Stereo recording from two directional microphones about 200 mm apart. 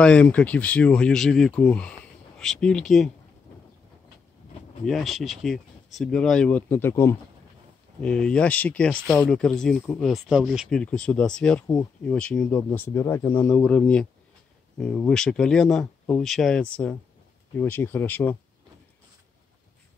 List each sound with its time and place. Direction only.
0.0 s speech: 5° left (ahead or behind)
4.8 s speech: centre (ahead or behind)